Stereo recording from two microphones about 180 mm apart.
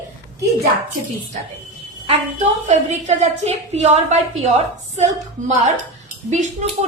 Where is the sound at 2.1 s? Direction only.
40° right (ahead or behind).